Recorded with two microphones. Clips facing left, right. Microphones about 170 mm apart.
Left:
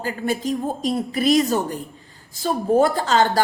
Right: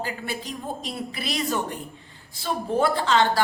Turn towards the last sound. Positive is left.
turn(degrees=40)  # may be behind; listen again after turning